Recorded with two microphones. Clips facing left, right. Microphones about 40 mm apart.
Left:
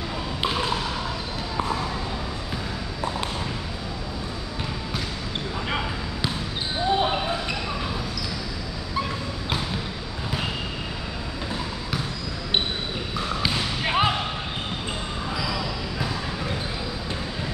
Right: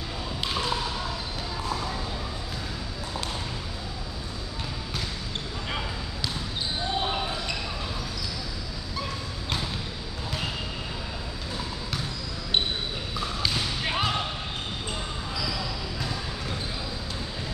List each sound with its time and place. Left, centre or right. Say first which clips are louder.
0.4 s basketball bounce: left 5 dB; centre
5.7 s basketball bounce: left 3 dB; left
13.4 s basketball bounce: left 2 dB; centre